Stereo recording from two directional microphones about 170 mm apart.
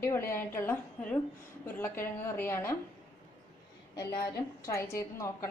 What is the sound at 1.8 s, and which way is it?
Speech, 15° left (ahead or behind).